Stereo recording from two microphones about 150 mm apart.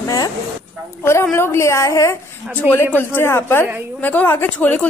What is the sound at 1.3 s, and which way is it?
A woman's voice, 15° left (ahead or behind).